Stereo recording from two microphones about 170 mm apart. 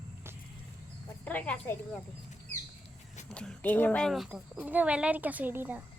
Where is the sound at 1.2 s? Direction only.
10° left (ahead or behind).